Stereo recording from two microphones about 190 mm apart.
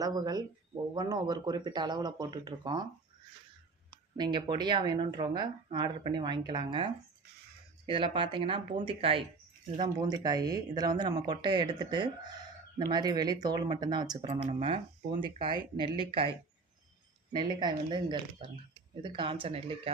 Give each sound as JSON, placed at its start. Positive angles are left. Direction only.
{"t": 0.0, "sound": "speech", "side_deg": -20}
{"t": 4.2, "sound": "speech", "side_deg": -25}
{"t": 7.9, "sound": "speech", "side_deg": -25}
{"t": 17.3, "sound": "speech", "side_deg": -25}